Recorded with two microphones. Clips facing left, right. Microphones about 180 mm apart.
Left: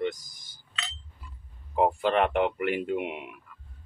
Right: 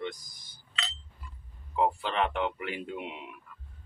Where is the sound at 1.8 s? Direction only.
50° left (ahead or behind).